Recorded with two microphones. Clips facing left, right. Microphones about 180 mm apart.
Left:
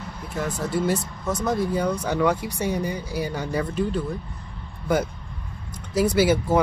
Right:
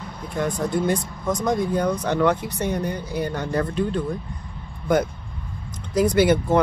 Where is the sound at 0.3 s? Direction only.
5° left (ahead or behind).